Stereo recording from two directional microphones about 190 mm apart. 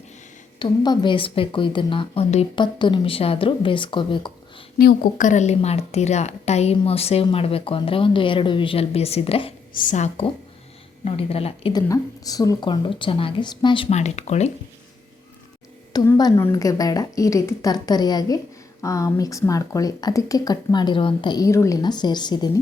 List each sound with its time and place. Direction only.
0.6 s speech: 25° left (ahead or behind)
4.8 s a woman's voice: 45° left (ahead or behind); by 9.5 s 30° left (ahead or behind)
9.7 s a woman's voice: 40° left (ahead or behind)
11.9 s speech: 20° left (ahead or behind)
13.9 s a woman's voice: 35° left (ahead or behind)
15.9 s speech: 20° left (ahead or behind)